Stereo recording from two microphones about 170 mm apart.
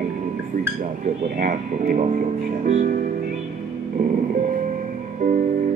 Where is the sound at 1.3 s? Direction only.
55° right (ahead or behind).